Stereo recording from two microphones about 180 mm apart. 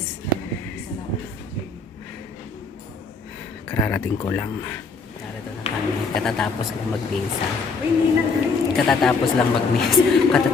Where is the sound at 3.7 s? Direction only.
10° left (ahead or behind).